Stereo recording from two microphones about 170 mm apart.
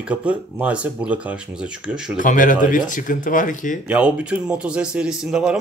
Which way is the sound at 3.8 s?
5° right (ahead or behind).